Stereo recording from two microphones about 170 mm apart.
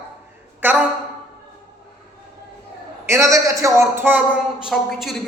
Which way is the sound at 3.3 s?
20° right (ahead or behind).